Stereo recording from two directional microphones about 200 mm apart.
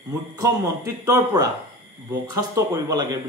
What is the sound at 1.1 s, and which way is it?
A man's voice, 15° right (ahead or behind).